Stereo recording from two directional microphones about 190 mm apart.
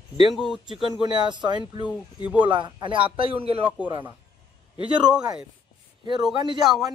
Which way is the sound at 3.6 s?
10° right (ahead or behind).